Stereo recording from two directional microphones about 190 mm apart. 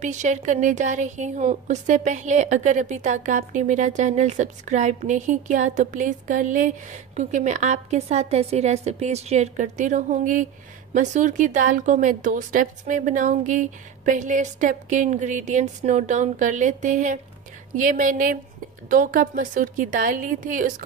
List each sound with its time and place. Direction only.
0.0 s a woman's voice: 40° right (ahead or behind)